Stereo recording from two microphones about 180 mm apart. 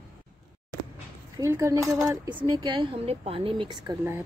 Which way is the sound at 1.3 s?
15° right (ahead or behind).